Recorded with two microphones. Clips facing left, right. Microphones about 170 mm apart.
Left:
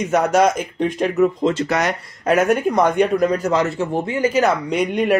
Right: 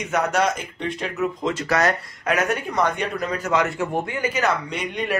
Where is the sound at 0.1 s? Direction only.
40° left (ahead or behind).